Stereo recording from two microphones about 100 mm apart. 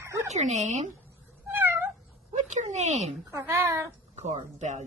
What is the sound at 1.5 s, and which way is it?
Cat, 20° right (ahead or behind).